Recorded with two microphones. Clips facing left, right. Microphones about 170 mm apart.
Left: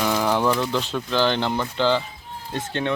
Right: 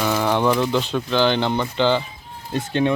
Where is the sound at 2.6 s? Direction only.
10° right (ahead or behind).